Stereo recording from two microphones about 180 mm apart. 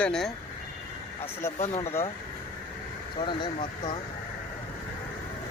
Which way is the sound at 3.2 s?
25° left (ahead or behind).